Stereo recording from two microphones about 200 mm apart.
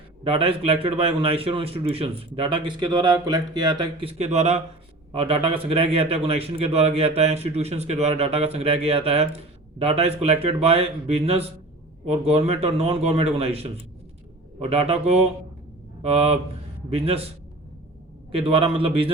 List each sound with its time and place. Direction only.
0.3 s a man's voice: 25° right (ahead or behind)
16.0 s a man's voice: 30° right (ahead or behind)
18.3 s a man's voice: 25° right (ahead or behind)